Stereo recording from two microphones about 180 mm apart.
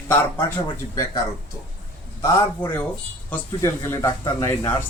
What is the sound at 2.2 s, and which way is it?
A man's voice, 20° left (ahead or behind).